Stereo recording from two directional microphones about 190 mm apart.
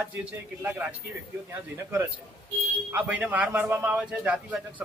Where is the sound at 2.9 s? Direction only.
10° right (ahead or behind).